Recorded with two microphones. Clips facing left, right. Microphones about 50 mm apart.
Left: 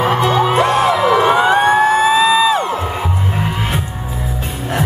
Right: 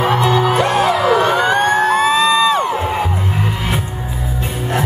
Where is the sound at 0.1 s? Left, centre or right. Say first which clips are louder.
Left 1 dB; left.